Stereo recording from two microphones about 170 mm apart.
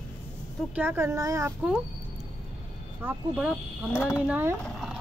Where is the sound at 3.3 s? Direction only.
5° right (ahead or behind).